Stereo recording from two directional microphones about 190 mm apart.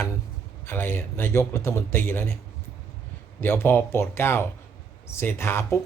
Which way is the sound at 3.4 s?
10° left (ahead or behind).